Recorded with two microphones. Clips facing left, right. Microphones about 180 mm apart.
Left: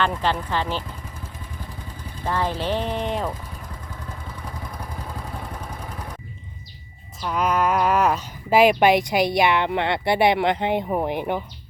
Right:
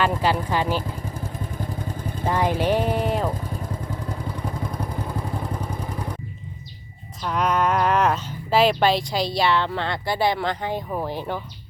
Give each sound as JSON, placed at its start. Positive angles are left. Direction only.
{"t": 0.0, "sound": "speech", "side_deg": -10}
{"t": 2.2, "sound": "speech", "side_deg": -15}
{"t": 7.3, "sound": "speech", "side_deg": 5}